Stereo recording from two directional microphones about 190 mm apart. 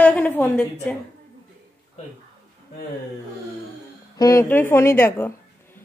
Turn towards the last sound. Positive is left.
turn(degrees=10)  # may be behind; listen again after turning